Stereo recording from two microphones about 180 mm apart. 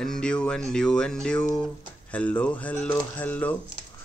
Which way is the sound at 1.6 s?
5° left (ahead or behind).